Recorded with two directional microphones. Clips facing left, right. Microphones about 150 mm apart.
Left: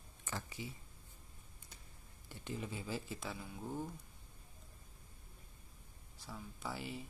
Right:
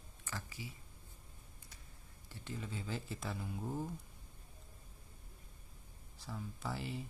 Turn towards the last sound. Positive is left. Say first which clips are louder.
# right 2 dB
turn(degrees=0)  # may be behind; listen again after turning